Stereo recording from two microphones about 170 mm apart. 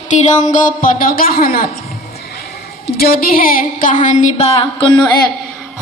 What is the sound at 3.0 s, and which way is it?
Speech, 60° left (ahead or behind).